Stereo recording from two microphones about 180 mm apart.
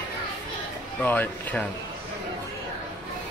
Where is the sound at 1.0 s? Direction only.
10° left (ahead or behind).